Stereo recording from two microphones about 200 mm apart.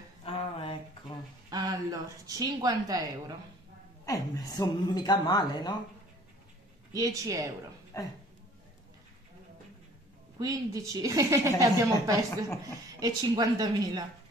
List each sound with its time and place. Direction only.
0.2 s a sound: 30° left (ahead or behind)
1.5 s speech: 20° right (ahead or behind)
4.0 s a woman's voice: 15° left (ahead or behind)
6.9 s a woman's voice: 15° right (ahead or behind)
7.9 s speech: 15° left (ahead or behind)
10.4 s a woman's voice: 15° right (ahead or behind)